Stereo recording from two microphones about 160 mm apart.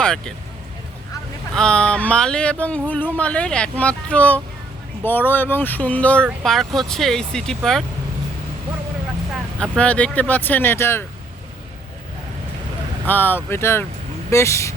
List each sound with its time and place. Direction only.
0.0 s speech: 5° left (ahead or behind)
1.5 s speech: 5° left (ahead or behind)
9.3 s speech: 5° left (ahead or behind)
13.1 s speech: 10° left (ahead or behind)